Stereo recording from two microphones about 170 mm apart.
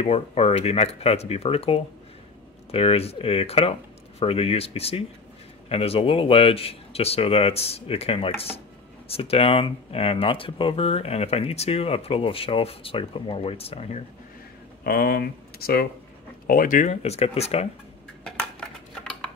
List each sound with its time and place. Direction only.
0.0 s speech: 35° left (ahead or behind)
14.8 s speech: 65° left (ahead or behind)
16.4 s speech: 55° left (ahead or behind); by 17.6 s 35° left (ahead or behind)